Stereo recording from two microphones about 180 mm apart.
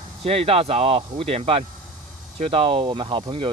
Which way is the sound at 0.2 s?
35° right (ahead or behind).